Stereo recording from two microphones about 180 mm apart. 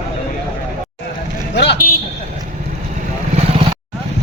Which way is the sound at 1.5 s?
70° left (ahead or behind).